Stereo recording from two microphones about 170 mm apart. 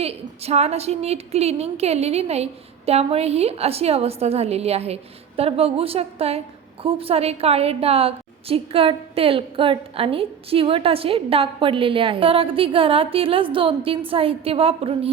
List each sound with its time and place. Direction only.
0.0 s a woman's voice: 35° right (ahead or behind)